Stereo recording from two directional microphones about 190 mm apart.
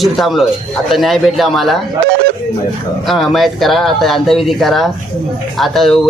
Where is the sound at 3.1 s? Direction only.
Centre (ahead or behind).